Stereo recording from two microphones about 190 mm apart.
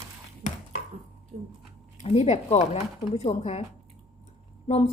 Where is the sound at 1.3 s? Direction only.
35° right (ahead or behind).